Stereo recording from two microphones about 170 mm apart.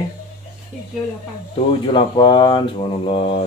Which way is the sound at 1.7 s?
30° left (ahead or behind).